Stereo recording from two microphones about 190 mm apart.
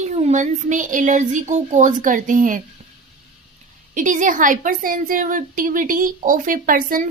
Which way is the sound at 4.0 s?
40° right (ahead or behind).